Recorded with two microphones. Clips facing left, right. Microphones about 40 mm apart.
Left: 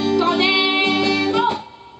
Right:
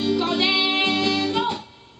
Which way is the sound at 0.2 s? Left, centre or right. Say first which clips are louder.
Left 5 dB; centre.